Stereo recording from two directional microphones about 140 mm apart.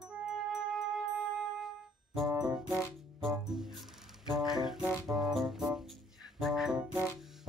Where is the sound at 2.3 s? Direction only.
25° right (ahead or behind).